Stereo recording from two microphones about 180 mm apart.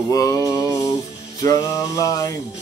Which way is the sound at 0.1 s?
20° left (ahead or behind).